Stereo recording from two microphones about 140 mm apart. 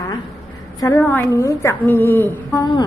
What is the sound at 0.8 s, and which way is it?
A woman's voice, 25° left (ahead or behind).